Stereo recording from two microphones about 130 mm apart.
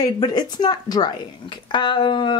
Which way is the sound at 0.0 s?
30° left (ahead or behind).